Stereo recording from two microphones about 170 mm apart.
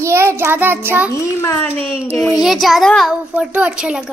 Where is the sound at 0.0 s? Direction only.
15° right (ahead or behind).